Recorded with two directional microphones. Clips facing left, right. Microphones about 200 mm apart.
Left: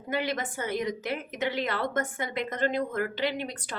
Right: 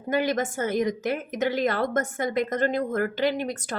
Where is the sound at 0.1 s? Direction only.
45° right (ahead or behind).